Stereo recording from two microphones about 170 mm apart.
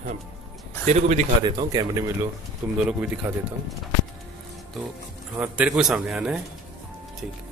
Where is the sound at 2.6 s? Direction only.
10° right (ahead or behind).